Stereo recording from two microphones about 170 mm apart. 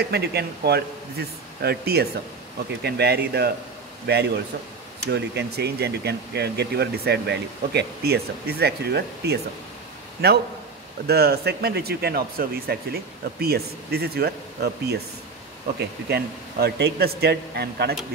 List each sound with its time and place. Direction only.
0.0 s speech: 75° right (ahead or behind)
5.0 s speech: 80° right
16.1 s speech: 70° right (ahead or behind)